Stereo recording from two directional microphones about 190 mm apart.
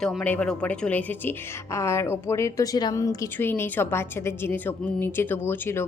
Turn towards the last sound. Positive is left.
turn(degrees=10)  # may be behind; listen again after turning